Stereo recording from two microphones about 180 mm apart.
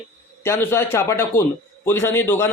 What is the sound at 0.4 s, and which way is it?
A man's voice, 15° left (ahead or behind).